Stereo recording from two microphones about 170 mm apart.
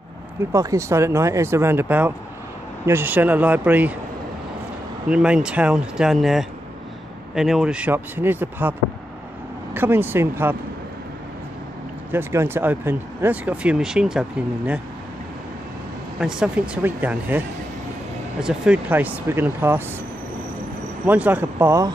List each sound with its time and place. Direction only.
0.5 s speech: 20° right (ahead or behind)
5.1 s speech: 5° right (ahead or behind)
9.8 s speech: 10° right (ahead or behind)
12.1 s speech: 15° right (ahead or behind)
16.2 s speech: 5° right (ahead or behind)
18.4 s speech: 5° right (ahead or behind)
21.0 s speech: 10° right (ahead or behind)